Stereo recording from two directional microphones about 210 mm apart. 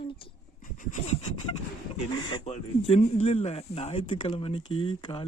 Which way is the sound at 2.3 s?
25° left (ahead or behind).